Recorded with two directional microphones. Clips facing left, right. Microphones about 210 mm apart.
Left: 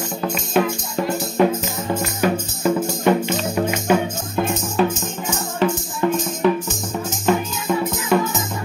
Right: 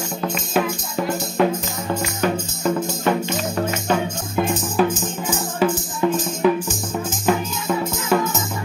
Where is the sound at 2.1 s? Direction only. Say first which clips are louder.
Left 1 dB; 10° left (ahead or behind).